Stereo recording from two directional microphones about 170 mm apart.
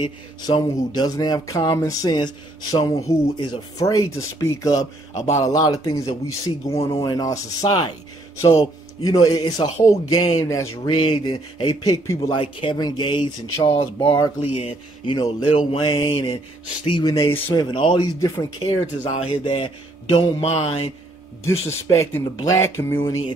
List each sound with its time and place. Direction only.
0.0 s speech: 25° left (ahead or behind)
9.0 s speech: 20° left (ahead or behind)
17.3 s speech: 15° left (ahead or behind)
17.6 s speech: 30° left (ahead or behind)
18.6 s speech: 30° left (ahead or behind)
21.5 s speech: 15° left (ahead or behind)